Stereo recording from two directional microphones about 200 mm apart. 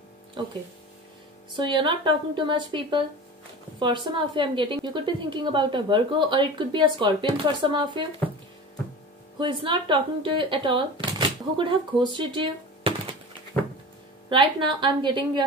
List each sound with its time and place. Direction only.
0.4 s speech: 25° right (ahead or behind)
1.6 s a woman's voice: 25° right (ahead or behind)
9.4 s a woman's voice: 25° right (ahead or behind)
14.3 s a woman's voice: 25° right (ahead or behind)